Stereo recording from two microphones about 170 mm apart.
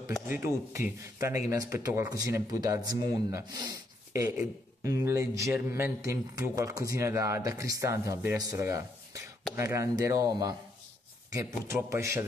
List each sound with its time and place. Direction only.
0.1 s speech: 15° right (ahead or behind)